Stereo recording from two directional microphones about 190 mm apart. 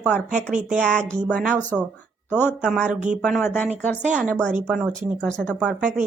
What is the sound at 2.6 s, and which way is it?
Speech, 5° left (ahead or behind).